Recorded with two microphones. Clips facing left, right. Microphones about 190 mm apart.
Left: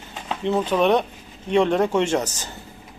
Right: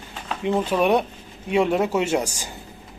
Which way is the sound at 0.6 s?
10° right (ahead or behind).